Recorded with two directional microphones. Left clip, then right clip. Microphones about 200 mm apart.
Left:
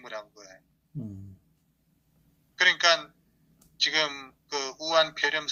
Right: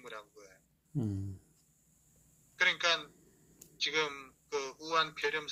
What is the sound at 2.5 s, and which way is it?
A man's voice, 35° left (ahead or behind).